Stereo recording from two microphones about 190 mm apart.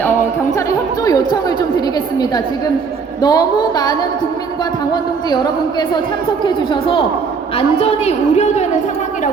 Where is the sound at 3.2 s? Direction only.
20° left (ahead or behind).